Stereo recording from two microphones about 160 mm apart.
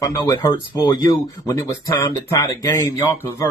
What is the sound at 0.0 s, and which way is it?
Speech, 20° left (ahead or behind).